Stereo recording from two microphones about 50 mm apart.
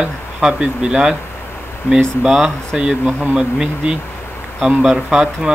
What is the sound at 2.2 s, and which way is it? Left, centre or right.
Speech, centre.